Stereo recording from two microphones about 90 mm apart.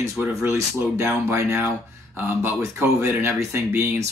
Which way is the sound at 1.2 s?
25° right (ahead or behind).